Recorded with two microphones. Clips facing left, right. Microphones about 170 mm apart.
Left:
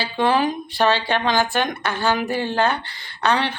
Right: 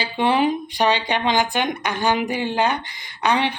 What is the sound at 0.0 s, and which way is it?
A woman's voice, 20° right (ahead or behind).